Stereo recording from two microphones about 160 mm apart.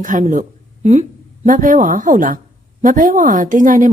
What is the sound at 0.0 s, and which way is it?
A woman's voice, 50° right (ahead or behind).